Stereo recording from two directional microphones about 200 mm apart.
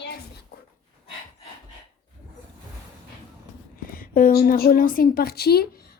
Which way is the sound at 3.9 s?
45° left (ahead or behind).